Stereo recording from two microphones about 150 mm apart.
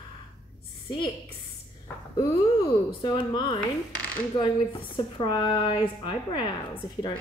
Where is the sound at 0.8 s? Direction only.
30° left (ahead or behind).